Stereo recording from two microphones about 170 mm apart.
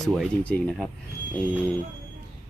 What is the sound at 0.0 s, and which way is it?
Speech, 5° left (ahead or behind).